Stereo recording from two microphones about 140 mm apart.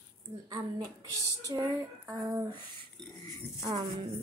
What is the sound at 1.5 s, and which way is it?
Speech, 25° right (ahead or behind).